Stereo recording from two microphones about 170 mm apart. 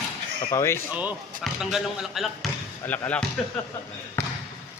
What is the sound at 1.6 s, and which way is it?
Speech, centre (ahead or behind).